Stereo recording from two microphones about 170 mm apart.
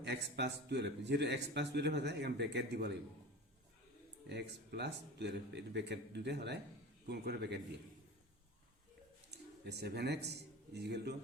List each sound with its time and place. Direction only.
0.0 s speech: 80° right
4.7 s a man's voice: 80° right
9.3 s speech: 75° right (ahead or behind)